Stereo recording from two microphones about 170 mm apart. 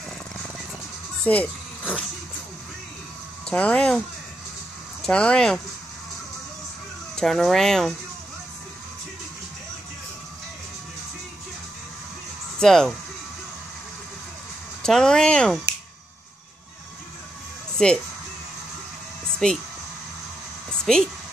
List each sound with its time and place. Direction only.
1.2 s speech: 10° left (ahead or behind)
3.4 s speech: 5° left (ahead or behind)
5.0 s speech: 5° left (ahead or behind)
7.2 s speech: centre (ahead or behind)
12.5 s speech: centre (ahead or behind)
14.8 s speech: 5° left (ahead or behind)
17.8 s speech: 5° left (ahead or behind)
19.4 s speech: 5° left (ahead or behind)
20.9 s speech: centre (ahead or behind)